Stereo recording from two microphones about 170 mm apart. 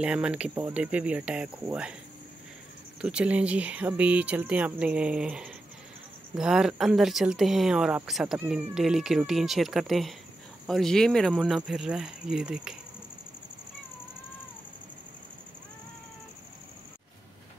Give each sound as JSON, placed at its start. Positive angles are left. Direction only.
{"t": 0.0, "sound": "speech", "side_deg": -5}
{"t": 3.0, "sound": "speech", "side_deg": -5}